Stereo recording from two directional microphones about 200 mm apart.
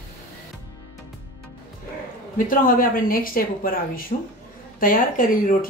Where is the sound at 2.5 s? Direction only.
45° left (ahead or behind).